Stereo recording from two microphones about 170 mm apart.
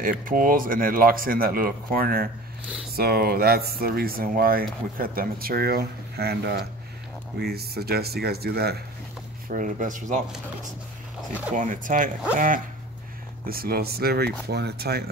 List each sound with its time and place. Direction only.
0.0 s speech: 55° right (ahead or behind); by 8.7 s 70° right (ahead or behind)
9.5 s speech: 50° right (ahead or behind)
11.5 s speech: 50° right (ahead or behind); by 15.0 s 70° right (ahead or behind)